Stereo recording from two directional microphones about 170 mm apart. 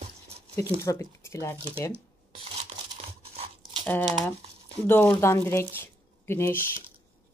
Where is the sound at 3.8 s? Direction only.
10° left (ahead or behind).